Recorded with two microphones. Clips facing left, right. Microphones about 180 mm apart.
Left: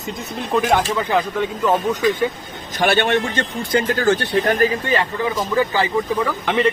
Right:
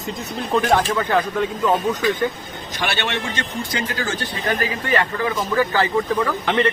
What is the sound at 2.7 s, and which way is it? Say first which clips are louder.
A man's voice: left 8 dB; 50° left (ahead or behind).